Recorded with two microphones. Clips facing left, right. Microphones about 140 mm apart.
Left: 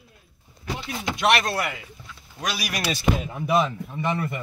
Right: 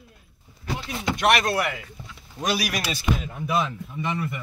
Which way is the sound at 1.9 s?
20° right (ahead or behind).